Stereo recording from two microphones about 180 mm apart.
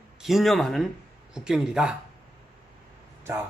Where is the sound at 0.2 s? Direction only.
Centre (ahead or behind).